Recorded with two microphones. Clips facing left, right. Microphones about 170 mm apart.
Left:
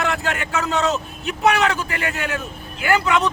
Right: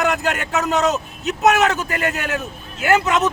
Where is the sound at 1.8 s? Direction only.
40° right (ahead or behind).